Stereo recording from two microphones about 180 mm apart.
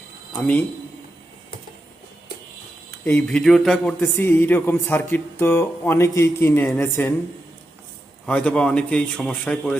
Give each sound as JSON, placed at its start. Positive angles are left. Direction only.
{"t": 3.0, "sound": "speech", "side_deg": 5}
{"t": 8.3, "sound": "speech", "side_deg": 10}